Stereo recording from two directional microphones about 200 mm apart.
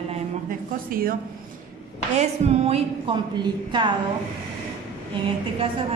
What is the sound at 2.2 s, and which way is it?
A woman's voice, 30° right (ahead or behind).